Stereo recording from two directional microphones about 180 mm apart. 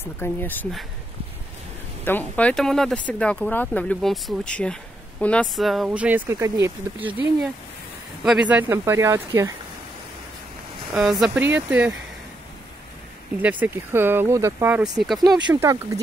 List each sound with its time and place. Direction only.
0.0 s speech: 10° left (ahead or behind)
2.0 s speech: 10° left (ahead or behind); by 7.1 s 15° right (ahead or behind)
8.2 s speech: 5° right (ahead or behind)
11.0 s speech: 5° right (ahead or behind)
13.4 s speech: 10° right (ahead or behind)
15.2 s speech: 20° right (ahead or behind)